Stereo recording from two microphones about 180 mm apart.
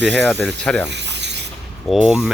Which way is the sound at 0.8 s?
70° right (ahead or behind).